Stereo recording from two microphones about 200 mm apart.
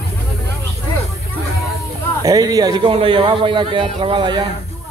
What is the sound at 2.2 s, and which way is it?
A man's voice, 20° right (ahead or behind).